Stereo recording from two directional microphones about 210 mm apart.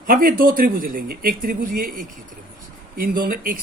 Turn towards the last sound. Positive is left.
turn(degrees=-45)  # may be behind; listen again after turning